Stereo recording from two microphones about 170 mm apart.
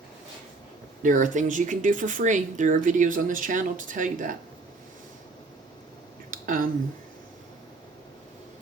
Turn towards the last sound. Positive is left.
turn(degrees=-55)  # may be behind; listen again after turning